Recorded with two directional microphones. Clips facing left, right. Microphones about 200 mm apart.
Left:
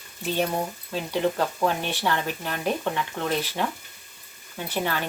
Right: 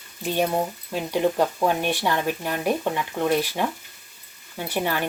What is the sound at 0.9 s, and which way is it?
Speech, 15° right (ahead or behind).